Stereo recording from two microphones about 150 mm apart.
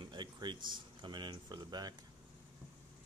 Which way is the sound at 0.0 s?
30° right (ahead or behind).